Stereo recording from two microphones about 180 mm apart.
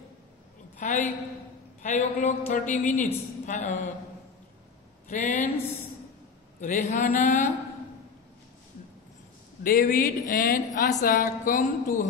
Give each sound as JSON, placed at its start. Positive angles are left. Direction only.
{"t": 0.7, "sound": "a woman's voice", "side_deg": 45}
{"t": 3.4, "sound": "a sound", "side_deg": 40}
{"t": 5.0, "sound": "speech", "side_deg": 45}
{"t": 6.6, "sound": "a woman's voice", "side_deg": 45}
{"t": 9.6, "sound": "a woman's voice", "side_deg": 55}